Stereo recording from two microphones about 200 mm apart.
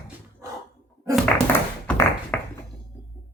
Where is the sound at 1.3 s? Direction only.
5° left (ahead or behind).